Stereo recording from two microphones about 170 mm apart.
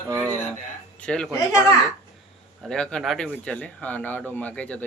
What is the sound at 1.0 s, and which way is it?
Speech, 5° left (ahead or behind).